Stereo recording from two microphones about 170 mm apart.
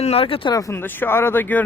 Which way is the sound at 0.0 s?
35° left (ahead or behind).